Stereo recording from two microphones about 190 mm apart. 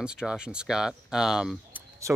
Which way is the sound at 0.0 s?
5° right (ahead or behind).